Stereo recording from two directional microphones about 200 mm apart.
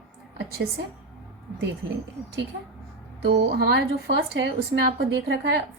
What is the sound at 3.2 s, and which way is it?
A woman's voice, 55° right (ahead or behind).